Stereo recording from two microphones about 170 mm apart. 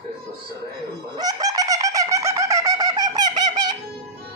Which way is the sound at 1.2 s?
20° right (ahead or behind).